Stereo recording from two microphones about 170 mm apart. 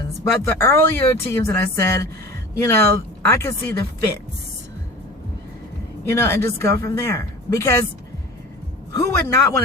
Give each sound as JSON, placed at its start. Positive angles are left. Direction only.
{"t": 0.4, "sound": "speech", "side_deg": 15}
{"t": 6.1, "sound": "speech", "side_deg": 15}
{"t": 9.0, "sound": "speech", "side_deg": 20}